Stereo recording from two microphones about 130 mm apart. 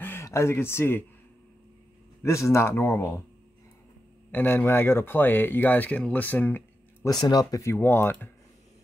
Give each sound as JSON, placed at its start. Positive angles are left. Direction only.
{"t": 0.0, "sound": "speech", "side_deg": 20}
{"t": 2.2, "sound": "speech", "side_deg": 20}
{"t": 4.3, "sound": "speech", "side_deg": 15}
{"t": 7.1, "sound": "speech", "side_deg": 30}